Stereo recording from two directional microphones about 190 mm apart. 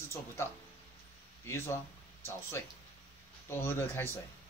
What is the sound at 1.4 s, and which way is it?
Speech, 15° left (ahead or behind).